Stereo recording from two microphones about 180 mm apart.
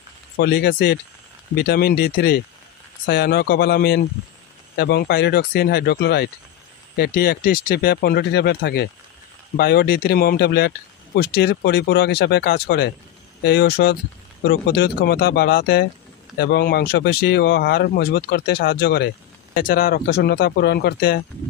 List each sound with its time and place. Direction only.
0.4 s speech: 65° left (ahead or behind)